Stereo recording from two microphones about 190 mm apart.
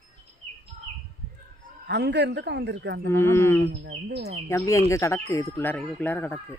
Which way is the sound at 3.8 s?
60° right (ahead or behind).